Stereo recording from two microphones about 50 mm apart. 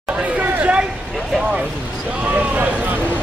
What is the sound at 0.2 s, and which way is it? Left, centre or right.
Chatter, right.